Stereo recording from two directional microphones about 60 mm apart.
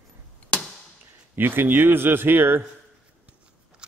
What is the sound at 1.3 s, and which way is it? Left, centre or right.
Speech, right.